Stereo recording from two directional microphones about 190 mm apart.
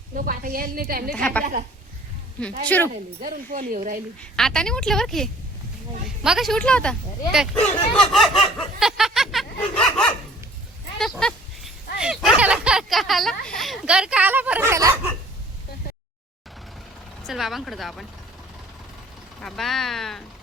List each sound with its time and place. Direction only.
0.2 s a woman's voice: 45° right (ahead or behind)
1.1 s a woman's voice: 5° left (ahead or behind)
2.6 s a woman's voice: 10° left (ahead or behind)
3.2 s a woman's voice: 45° right (ahead or behind)
4.2 s a woman's voice: 5° left (ahead or behind)
7.9 s a sound: centre (ahead or behind); by 14.9 s 15° right (ahead or behind)
17.2 s a woman's voice: centre (ahead or behind)
19.4 s a woman's voice: centre (ahead or behind)